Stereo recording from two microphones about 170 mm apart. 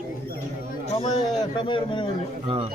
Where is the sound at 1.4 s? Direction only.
30° left (ahead or behind).